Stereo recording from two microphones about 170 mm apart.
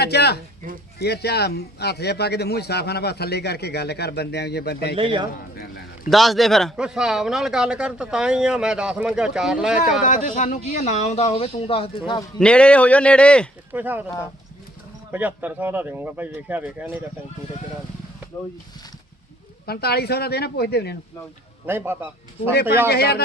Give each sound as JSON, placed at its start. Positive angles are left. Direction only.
{"t": 0.0, "sound": "a man's voice", "side_deg": 75}
{"t": 4.9, "sound": "a man's voice", "side_deg": -30}
{"t": 5.3, "sound": "a man's voice", "side_deg": 60}
{"t": 6.1, "sound": "a man's voice", "side_deg": 0}
{"t": 10.0, "sound": "speech", "side_deg": 50}
{"t": 12.4, "sound": "speech", "side_deg": 5}
{"t": 13.7, "sound": "speech", "side_deg": -10}
{"t": 15.1, "sound": "speech", "side_deg": -10}
{"t": 19.6, "sound": "a man's voice", "side_deg": 70}
{"t": 21.7, "sound": "speech", "side_deg": -10}
{"t": 22.9, "sound": "a man's voice", "side_deg": 65}